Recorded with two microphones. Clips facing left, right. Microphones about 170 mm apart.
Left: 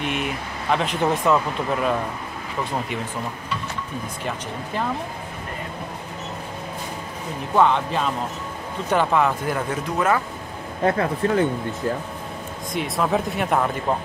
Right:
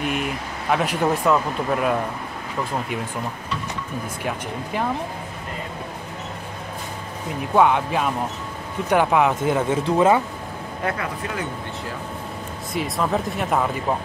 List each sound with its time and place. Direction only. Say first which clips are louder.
0.0 s speech: right 1 dB; centre (ahead or behind)
7.5 s speech: right 1 dB; 10° right (ahead or behind)
10.8 s speech: left 7 dB; 35° left (ahead or behind)
12.7 s speech: left 1 dB; centre (ahead or behind)